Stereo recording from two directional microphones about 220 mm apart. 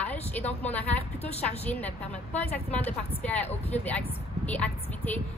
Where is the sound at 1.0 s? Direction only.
30° left (ahead or behind).